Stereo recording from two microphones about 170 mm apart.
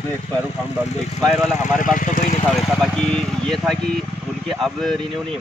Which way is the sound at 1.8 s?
50° left (ahead or behind).